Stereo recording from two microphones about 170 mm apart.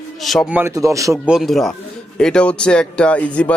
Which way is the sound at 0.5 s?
15° right (ahead or behind).